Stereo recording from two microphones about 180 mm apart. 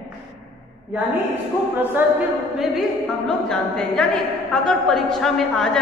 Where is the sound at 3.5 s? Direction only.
Centre (ahead or behind).